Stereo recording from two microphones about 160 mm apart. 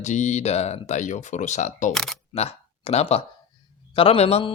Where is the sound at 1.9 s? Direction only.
Centre (ahead or behind).